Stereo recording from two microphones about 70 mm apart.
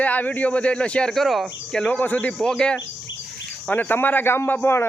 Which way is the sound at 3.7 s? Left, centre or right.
Left.